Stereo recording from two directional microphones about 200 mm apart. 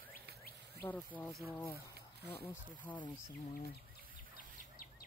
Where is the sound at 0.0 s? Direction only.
50° right (ahead or behind).